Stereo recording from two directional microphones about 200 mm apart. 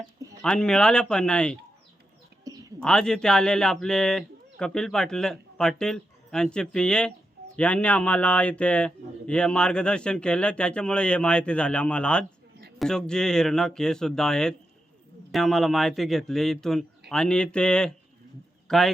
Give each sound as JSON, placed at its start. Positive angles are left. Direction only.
{"t": 0.4, "sound": "a man's voice", "side_deg": 5}
{"t": 2.4, "sound": "bird", "side_deg": -15}
{"t": 2.8, "sound": "a man's voice", "side_deg": 5}